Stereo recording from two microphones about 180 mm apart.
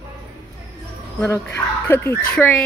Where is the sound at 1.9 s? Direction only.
10° left (ahead or behind).